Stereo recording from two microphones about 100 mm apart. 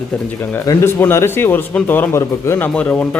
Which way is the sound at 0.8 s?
25° left (ahead or behind).